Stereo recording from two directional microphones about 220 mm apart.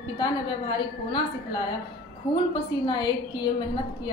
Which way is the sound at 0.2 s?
20° left (ahead or behind).